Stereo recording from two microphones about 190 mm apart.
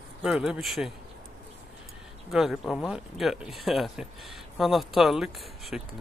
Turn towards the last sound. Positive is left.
turn(degrees=0)  # may be behind; listen again after turning